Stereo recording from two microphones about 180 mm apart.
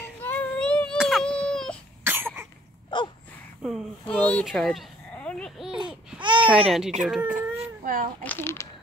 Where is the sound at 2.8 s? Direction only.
25° left (ahead or behind).